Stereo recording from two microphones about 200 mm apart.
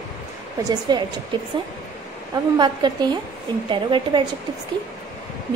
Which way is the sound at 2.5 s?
20° right (ahead or behind).